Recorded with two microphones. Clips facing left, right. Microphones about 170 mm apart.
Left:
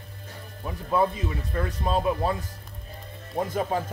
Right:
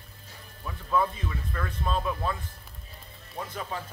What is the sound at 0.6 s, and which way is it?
Speech, 30° left (ahead or behind).